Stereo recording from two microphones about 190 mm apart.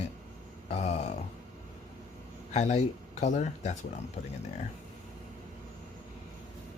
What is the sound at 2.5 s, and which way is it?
Speech, 35° left (ahead or behind).